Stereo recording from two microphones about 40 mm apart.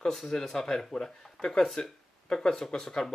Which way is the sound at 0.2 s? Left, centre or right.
Centre.